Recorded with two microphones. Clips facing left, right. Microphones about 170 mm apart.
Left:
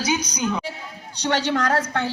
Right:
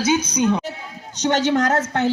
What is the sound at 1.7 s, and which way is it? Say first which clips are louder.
Speech: right 3 dB; 20° right (ahead or behind).